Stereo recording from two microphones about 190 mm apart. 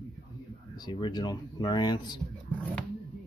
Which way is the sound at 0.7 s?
20° left (ahead or behind).